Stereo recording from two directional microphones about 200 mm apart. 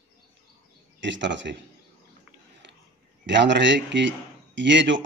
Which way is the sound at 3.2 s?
60° right (ahead or behind).